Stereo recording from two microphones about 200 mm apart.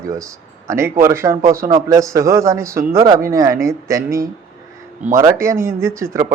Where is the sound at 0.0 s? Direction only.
15° right (ahead or behind).